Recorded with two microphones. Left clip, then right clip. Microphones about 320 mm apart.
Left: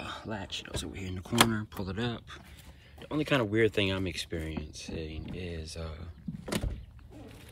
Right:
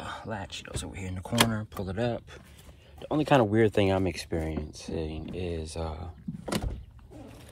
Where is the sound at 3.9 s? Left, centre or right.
Centre.